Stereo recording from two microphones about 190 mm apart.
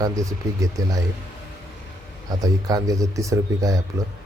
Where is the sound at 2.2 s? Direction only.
20° right (ahead or behind).